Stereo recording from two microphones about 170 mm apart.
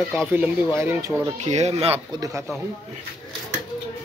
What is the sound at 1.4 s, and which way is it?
Speech, 40° right (ahead or behind).